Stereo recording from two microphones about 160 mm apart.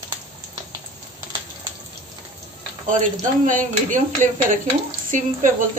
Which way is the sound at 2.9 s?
55° right (ahead or behind).